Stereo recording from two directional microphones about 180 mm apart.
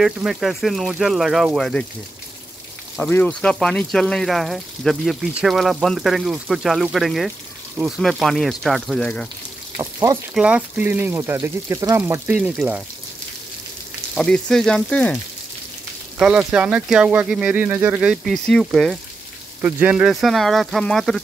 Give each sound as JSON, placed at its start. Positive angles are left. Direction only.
{"t": 0.0, "sound": "speech", "side_deg": 0}
{"t": 3.0, "sound": "speech", "side_deg": 10}
{"t": 9.8, "sound": "speech", "side_deg": -20}
{"t": 10.3, "sound": "speech", "side_deg": -5}
{"t": 12.4, "sound": "speech", "side_deg": -5}
{"t": 14.1, "sound": "speech", "side_deg": 5}
{"t": 16.2, "sound": "speech", "side_deg": -5}